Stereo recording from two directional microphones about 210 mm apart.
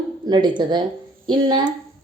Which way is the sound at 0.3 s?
20° right (ahead or behind).